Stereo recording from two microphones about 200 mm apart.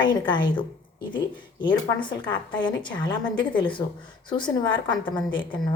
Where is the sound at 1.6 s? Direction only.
25° left (ahead or behind).